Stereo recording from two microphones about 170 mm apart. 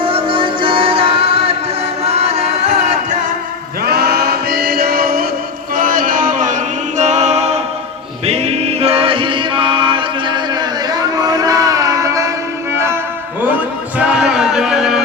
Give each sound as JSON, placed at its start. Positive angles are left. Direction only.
{"t": 0.0, "sound": "music", "side_deg": -30}
{"t": 3.8, "sound": "choir", "side_deg": -70}
{"t": 5.7, "sound": "a capella", "side_deg": -55}
{"t": 8.3, "sound": "music", "side_deg": -40}
{"t": 14.2, "sound": "a sound", "side_deg": -5}